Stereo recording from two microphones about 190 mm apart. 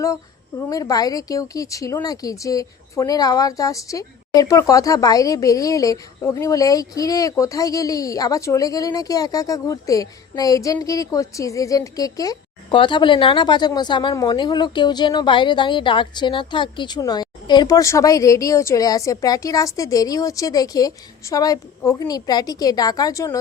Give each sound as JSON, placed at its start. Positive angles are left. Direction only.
{"t": 0.7, "sound": "speech", "side_deg": 20}